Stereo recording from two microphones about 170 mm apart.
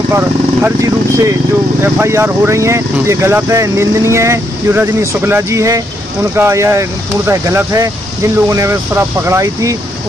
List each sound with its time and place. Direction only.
0.1 s speech: 10° right (ahead or behind)